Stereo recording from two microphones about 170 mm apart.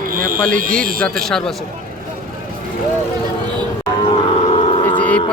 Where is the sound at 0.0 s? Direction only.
55° right (ahead or behind).